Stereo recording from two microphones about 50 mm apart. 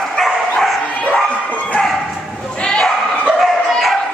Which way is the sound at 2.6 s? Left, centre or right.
Centre.